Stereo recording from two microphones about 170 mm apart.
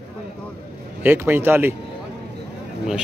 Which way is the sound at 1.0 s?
15° right (ahead or behind).